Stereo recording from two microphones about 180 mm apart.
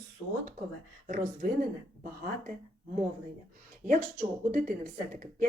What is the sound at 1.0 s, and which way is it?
Speech, 50° right (ahead or behind).